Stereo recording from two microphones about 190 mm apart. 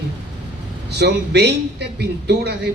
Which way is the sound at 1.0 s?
60° right (ahead or behind).